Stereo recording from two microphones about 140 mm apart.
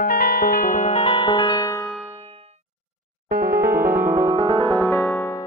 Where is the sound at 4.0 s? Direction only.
70° right (ahead or behind).